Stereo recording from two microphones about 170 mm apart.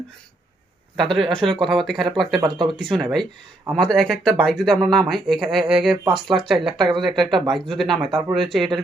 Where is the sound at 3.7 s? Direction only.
5° left (ahead or behind).